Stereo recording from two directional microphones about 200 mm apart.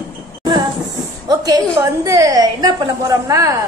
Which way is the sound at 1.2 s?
20° right (ahead or behind).